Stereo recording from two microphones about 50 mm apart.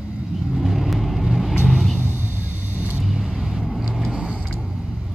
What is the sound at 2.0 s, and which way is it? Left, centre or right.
Vehicle, right.